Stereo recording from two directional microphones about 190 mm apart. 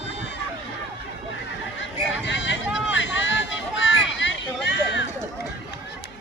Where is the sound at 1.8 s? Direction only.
70° left (ahead or behind).